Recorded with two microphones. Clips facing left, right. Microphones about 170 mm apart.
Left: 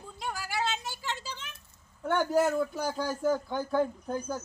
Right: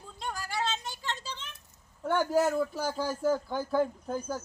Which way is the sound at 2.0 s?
Centre (ahead or behind).